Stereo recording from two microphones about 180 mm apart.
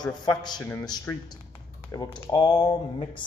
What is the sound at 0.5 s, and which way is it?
Speech, 10° left (ahead or behind).